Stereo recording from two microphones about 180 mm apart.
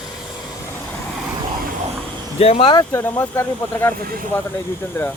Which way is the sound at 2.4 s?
30° left (ahead or behind).